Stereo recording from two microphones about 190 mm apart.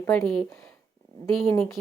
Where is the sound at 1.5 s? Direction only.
10° left (ahead or behind).